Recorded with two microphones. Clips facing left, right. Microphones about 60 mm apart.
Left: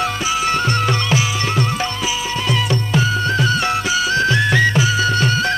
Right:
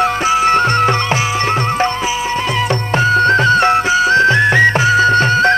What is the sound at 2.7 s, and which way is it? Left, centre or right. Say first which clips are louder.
Music: right 5 dB; right.